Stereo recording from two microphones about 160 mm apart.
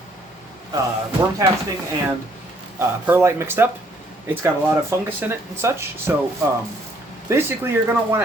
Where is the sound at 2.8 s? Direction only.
15° right (ahead or behind).